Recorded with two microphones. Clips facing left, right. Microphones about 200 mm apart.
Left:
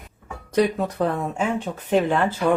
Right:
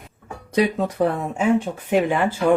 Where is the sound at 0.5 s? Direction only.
10° right (ahead or behind).